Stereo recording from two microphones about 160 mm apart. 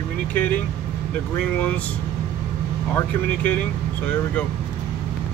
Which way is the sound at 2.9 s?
10° left (ahead or behind).